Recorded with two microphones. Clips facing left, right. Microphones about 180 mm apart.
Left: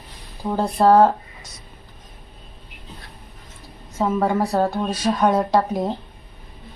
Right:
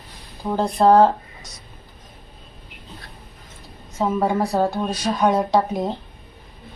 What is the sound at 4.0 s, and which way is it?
Speech, centre (ahead or behind).